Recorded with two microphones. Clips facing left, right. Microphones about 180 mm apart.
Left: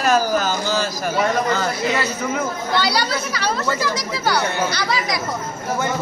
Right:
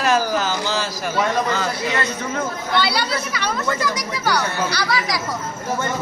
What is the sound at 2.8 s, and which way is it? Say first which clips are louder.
Speech: even; 40° left (ahead or behind).